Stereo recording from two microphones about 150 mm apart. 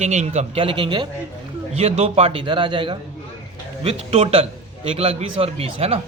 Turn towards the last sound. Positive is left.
turn(degrees=-40)  # may be behind; listen again after turning